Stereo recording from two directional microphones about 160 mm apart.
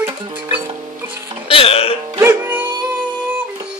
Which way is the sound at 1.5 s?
35° left (ahead or behind).